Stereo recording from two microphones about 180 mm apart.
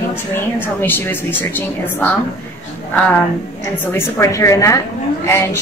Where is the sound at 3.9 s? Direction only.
15° left (ahead or behind).